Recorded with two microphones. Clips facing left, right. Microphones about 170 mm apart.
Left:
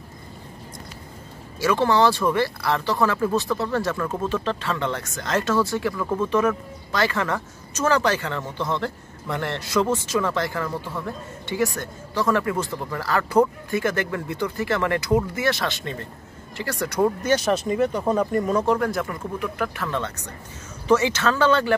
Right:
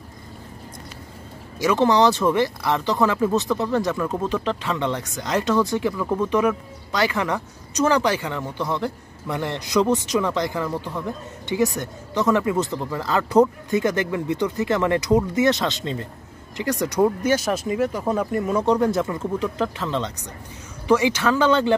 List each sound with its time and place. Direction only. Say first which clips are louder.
1.6 s speech: right 2 dB; 15° right (ahead or behind)
18.7 s speech: right 3 dB; 25° right (ahead or behind)